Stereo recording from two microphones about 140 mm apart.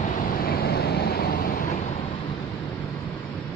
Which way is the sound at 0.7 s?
90° left.